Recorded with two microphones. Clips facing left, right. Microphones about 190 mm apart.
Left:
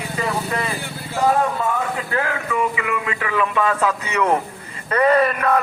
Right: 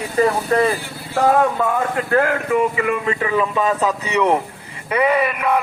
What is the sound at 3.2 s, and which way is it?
Speech, 25° right (ahead or behind).